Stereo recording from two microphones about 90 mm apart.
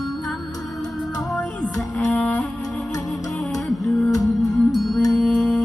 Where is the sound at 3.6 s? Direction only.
Centre (ahead or behind).